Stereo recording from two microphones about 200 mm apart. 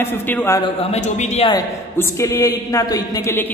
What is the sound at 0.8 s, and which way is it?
Speech, 35° left (ahead or behind).